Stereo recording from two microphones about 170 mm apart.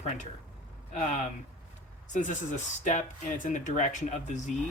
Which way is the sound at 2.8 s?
45° left (ahead or behind).